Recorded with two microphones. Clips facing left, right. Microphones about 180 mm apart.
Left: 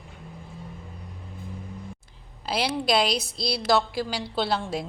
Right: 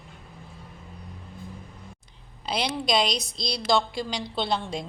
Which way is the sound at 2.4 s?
5° left (ahead or behind).